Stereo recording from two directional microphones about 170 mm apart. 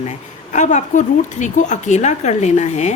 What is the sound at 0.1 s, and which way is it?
A woman's voice, 45° left (ahead or behind).